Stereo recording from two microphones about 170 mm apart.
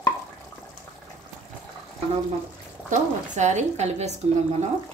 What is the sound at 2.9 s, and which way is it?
A woman's voice, 45° right (ahead or behind).